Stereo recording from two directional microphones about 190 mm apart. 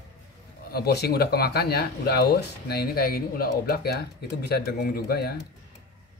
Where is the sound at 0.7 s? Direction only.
55° left (ahead or behind).